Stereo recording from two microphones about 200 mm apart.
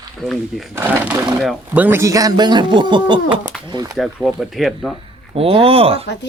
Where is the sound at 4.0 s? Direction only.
Centre (ahead or behind).